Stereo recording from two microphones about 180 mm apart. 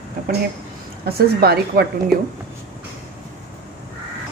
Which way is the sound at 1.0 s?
60° right (ahead or behind).